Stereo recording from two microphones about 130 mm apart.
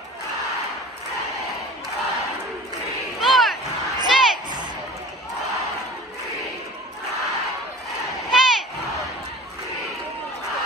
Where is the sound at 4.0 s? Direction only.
35° right (ahead or behind).